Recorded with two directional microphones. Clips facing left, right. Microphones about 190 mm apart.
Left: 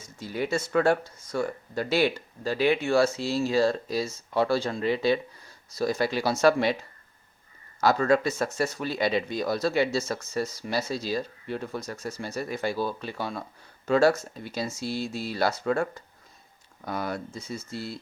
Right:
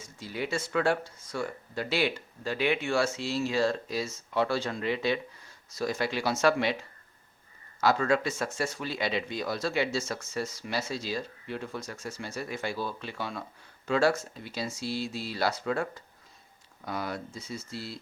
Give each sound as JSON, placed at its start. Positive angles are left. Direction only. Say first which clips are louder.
{"t": 0.2, "sound": "speech", "louder": "left 4 dB", "side_deg": 45}
{"t": 7.8, "sound": "speech", "louder": "left 3 dB", "side_deg": 40}